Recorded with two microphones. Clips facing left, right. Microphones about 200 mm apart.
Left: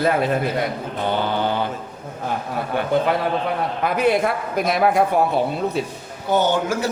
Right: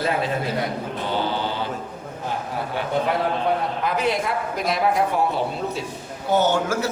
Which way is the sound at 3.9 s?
55° left (ahead or behind).